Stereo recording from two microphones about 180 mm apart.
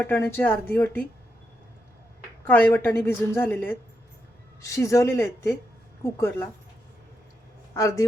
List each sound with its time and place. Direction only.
0.0 s a woman's voice: 10° left (ahead or behind)
2.4 s a woman's voice: 10° left (ahead or behind)
7.7 s a man's voice: 15° left (ahead or behind)